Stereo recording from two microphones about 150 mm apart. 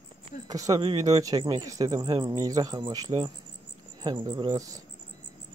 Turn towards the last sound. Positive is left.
turn(degrees=-20)  # may be behind; listen again after turning